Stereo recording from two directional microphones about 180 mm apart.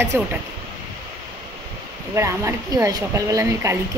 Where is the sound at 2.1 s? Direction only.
15° right (ahead or behind).